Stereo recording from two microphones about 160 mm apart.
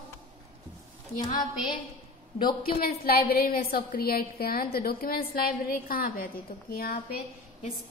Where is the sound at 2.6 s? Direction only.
70° left (ahead or behind).